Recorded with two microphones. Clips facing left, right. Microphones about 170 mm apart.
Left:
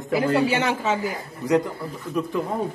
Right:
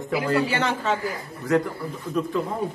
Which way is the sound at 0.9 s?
20° left (ahead or behind).